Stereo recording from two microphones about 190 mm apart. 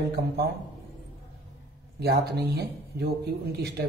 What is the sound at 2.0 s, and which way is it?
A man's voice, 55° right (ahead or behind).